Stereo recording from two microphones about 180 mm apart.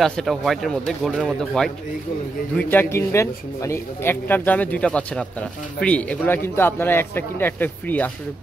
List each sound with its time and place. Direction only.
0.0 s speech: centre (ahead or behind)